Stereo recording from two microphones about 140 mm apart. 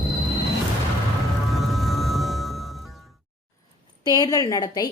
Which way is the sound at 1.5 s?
Centre (ahead or behind).